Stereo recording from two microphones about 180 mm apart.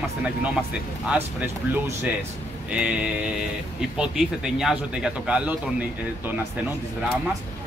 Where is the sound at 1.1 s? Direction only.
10° right (ahead or behind).